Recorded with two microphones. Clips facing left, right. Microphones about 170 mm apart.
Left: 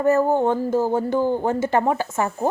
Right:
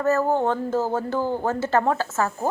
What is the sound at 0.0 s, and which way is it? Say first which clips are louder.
Speech: left 3 dB; 15° left (ahead or behind).